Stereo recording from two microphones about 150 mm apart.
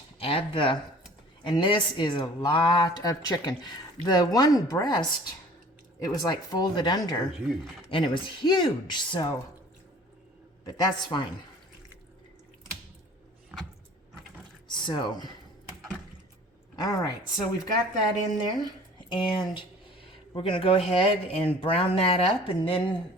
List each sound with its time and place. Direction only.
0.2 s speech: 35° left (ahead or behind)
7.3 s speech: 5° right (ahead or behind)
7.9 s speech: 35° left (ahead or behind)
10.7 s speech: 30° left (ahead or behind)
14.7 s speech: 30° left (ahead or behind)
16.8 s speech: 25° left (ahead or behind)
18.3 s speech: 30° left (ahead or behind)